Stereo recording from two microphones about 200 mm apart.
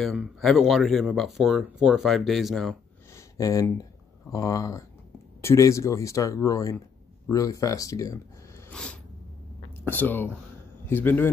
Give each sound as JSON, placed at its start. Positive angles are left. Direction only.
{"t": 0.0, "sound": "speech", "side_deg": 0}
{"t": 3.3, "sound": "speech", "side_deg": 15}
{"t": 8.6, "sound": "a sound", "side_deg": 5}
{"t": 9.8, "sound": "speech", "side_deg": 10}